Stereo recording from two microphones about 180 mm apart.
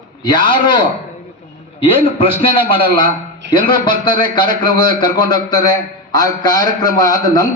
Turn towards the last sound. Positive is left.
turn(degrees=20)  # may be behind; listen again after turning